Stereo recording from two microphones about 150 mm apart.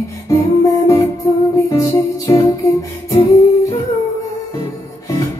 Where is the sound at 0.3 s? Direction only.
20° left (ahead or behind).